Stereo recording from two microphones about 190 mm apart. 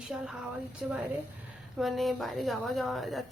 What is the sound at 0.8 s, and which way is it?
A woman's voice, centre (ahead or behind).